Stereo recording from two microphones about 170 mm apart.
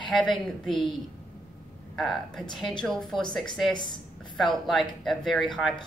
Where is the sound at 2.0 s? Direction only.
Centre (ahead or behind).